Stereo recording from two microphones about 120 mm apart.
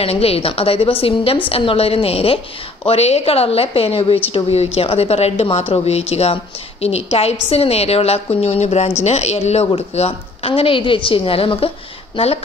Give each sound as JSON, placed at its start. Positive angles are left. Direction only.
{"t": 0.0, "sound": "a woman's voice", "side_deg": 55}